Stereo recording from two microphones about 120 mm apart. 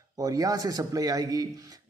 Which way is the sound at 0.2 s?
30° right (ahead or behind).